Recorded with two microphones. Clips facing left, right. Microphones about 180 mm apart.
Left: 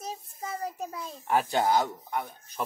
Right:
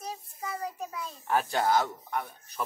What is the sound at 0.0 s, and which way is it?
Child singing, 25° left (ahead or behind).